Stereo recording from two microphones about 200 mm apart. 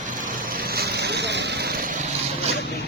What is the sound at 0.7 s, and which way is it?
Vehicle, 55° right (ahead or behind).